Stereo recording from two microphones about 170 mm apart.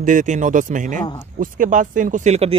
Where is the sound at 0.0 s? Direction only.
50° right (ahead or behind).